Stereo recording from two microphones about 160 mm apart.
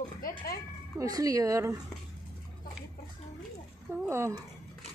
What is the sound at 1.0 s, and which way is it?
Speech, 20° right (ahead or behind).